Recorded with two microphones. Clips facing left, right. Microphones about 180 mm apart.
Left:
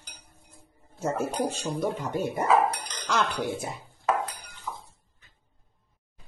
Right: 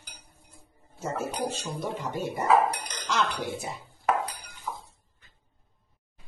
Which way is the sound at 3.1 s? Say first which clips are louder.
Left 2 dB; 55° left (ahead or behind).